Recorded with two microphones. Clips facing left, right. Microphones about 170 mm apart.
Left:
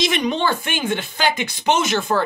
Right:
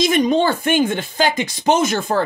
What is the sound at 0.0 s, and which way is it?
Speech, 45° right (ahead or behind).